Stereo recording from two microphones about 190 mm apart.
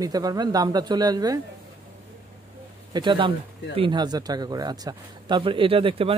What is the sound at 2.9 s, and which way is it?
Speech, 25° right (ahead or behind).